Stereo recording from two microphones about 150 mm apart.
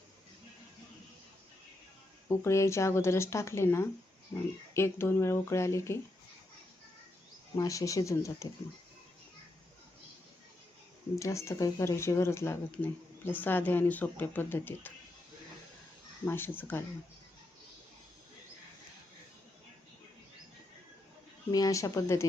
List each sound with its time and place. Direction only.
2.4 s speech: 20° left (ahead or behind)
7.5 s speech: 25° left (ahead or behind)
11.1 s speech: 20° left (ahead or behind)
16.2 s speech: 15° left (ahead or behind)
21.5 s speech: 25° left (ahead or behind)